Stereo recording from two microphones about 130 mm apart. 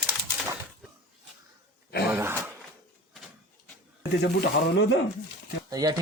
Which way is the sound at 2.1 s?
20° right (ahead or behind).